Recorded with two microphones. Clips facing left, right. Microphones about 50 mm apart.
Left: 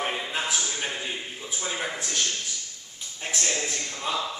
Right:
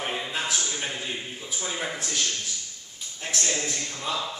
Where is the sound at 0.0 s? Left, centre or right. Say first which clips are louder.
Left 1 dB; centre.